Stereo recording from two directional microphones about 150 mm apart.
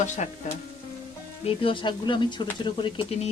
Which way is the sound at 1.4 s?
35° left (ahead or behind).